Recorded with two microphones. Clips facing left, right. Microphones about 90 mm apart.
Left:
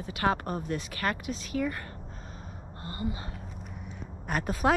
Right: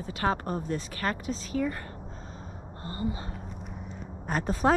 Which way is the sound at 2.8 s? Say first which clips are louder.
Right 2 dB; 30° right (ahead or behind).